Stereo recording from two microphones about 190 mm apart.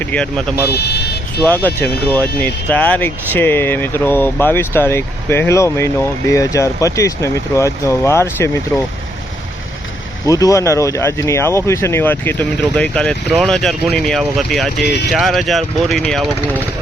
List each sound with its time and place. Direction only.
0.0 s speech: 5° left (ahead or behind)
0.7 s speech: 60° left (ahead or behind)
1.5 s speech: 10° left (ahead or behind)
10.2 s speech: 20° left (ahead or behind); by 16.2 s centre (ahead or behind)